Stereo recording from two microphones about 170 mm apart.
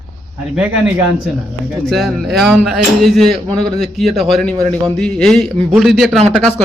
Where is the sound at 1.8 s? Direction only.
Centre (ahead or behind).